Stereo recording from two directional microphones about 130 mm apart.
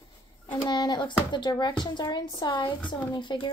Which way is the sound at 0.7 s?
35° left (ahead or behind).